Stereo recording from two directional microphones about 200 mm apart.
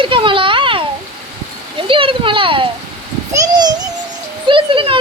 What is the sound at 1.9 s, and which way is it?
Speech, 25° right (ahead or behind).